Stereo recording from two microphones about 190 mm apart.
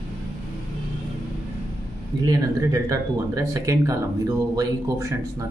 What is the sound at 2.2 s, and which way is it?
Speech, 20° right (ahead or behind).